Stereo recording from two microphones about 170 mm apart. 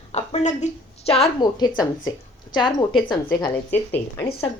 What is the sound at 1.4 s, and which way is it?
A woman's voice, 25° left (ahead or behind).